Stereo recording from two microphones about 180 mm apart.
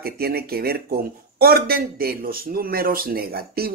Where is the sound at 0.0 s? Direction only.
60° right (ahead or behind).